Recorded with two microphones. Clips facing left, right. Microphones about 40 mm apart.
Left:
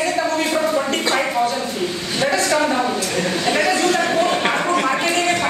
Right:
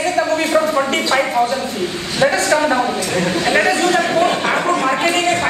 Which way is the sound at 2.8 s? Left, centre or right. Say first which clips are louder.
Right 2 dB; centre.